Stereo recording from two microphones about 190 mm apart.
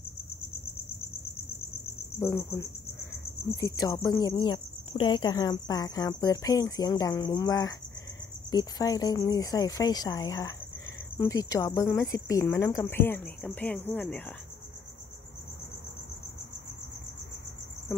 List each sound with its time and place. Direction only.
2.1 s speech: 15° left (ahead or behind)
3.5 s cricket: 15° left (ahead or behind)
11.1 s speech: 20° left (ahead or behind)